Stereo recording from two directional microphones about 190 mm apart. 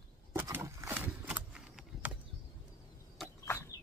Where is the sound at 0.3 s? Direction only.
10° right (ahead or behind).